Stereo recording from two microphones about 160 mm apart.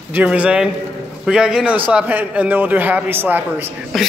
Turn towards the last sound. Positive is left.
turn(degrees=0)  # may be behind; listen again after turning